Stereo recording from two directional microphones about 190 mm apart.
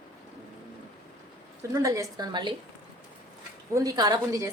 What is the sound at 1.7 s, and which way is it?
Speech, 15° right (ahead or behind).